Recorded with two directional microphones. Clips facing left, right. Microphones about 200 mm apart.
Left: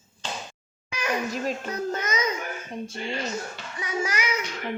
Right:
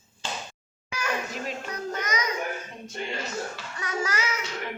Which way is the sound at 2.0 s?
25° left (ahead or behind).